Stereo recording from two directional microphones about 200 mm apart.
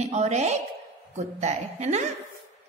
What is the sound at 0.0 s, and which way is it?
A woman's voice, 35° right (ahead or behind).